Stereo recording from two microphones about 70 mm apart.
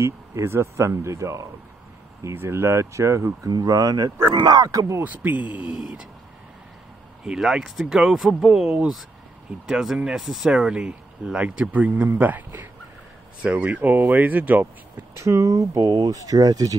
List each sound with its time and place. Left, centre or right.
0.4 s speech: right
2.3 s speech: right
3.4 s speech: right
5.0 s speech: right
5.7 s speech: centre
7.2 s speech: centre; by 14.7 s right
15.1 s speech: right